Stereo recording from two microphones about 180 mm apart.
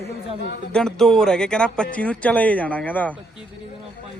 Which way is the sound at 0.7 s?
5° left (ahead or behind).